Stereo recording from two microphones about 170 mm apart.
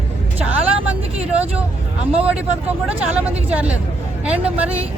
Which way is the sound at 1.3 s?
10° right (ahead or behind).